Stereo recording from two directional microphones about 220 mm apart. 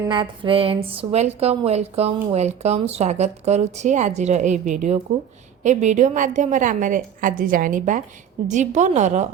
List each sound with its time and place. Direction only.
0.1 s a woman's voice: 20° right (ahead or behind)